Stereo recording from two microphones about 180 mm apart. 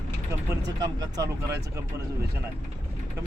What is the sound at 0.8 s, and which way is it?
Speech, 20° right (ahead or behind).